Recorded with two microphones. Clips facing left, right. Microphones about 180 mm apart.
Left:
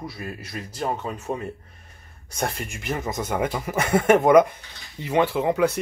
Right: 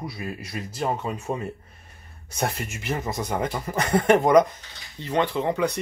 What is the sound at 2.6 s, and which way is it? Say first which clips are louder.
Speech: even; 5° right (ahead or behind).